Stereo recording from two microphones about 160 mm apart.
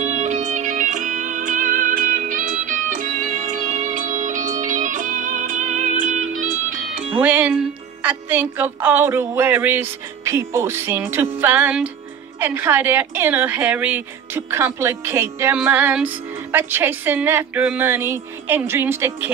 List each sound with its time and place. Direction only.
0.0 s music: 50° right (ahead or behind)
7.2 s speech: 10° right (ahead or behind)